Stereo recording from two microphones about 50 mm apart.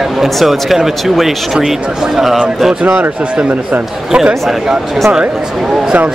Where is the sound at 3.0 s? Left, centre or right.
Right.